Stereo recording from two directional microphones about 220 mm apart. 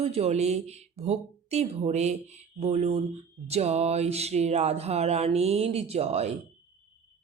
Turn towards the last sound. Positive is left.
turn(degrees=-30)  # may be behind; listen again after turning